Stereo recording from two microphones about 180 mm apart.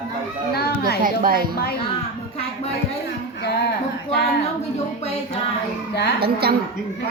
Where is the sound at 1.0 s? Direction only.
50° right (ahead or behind).